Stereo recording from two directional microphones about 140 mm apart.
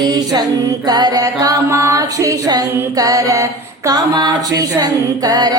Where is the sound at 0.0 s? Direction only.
30° right (ahead or behind).